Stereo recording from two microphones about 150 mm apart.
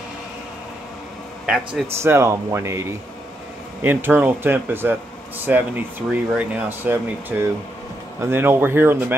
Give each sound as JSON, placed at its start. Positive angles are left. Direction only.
{"t": 1.4, "sound": "a man's voice", "side_deg": -5}
{"t": 2.0, "sound": "speech", "side_deg": -15}